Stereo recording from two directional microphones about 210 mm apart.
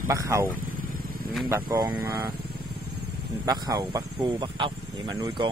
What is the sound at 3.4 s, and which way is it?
Speech, 20° right (ahead or behind).